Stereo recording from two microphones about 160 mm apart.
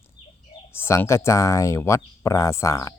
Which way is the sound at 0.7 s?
15° left (ahead or behind).